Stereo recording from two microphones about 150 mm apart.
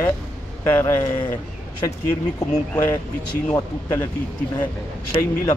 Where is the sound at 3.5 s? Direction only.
20° left (ahead or behind).